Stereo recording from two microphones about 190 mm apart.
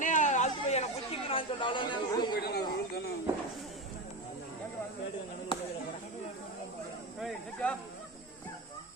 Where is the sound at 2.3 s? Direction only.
55° left (ahead or behind).